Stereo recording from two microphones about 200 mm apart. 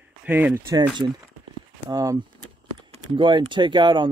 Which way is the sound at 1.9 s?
20° right (ahead or behind).